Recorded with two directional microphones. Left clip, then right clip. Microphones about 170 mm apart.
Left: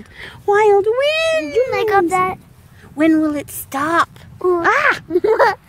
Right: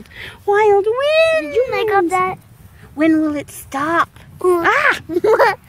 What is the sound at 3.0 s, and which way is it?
A child's voice, 20° left (ahead or behind).